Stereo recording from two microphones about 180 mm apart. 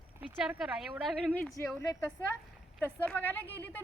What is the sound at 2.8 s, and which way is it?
Speech, 10° left (ahead or behind).